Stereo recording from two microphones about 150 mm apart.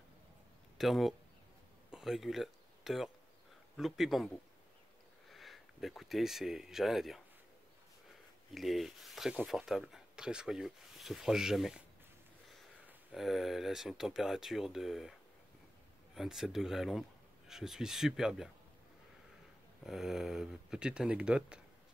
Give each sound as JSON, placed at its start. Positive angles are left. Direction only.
{"t": 0.7, "sound": "speech", "side_deg": 0}
{"t": 5.3, "sound": "speech", "side_deg": 0}
{"t": 8.5, "sound": "speech", "side_deg": 0}
{"t": 12.8, "sound": "speech", "side_deg": 0}
{"t": 16.2, "sound": "speech", "side_deg": -5}
{"t": 19.8, "sound": "speech", "side_deg": 0}